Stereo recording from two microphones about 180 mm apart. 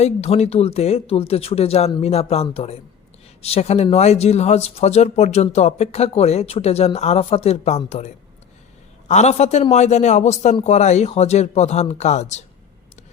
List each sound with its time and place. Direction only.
0.0 s speech: 35° left (ahead or behind)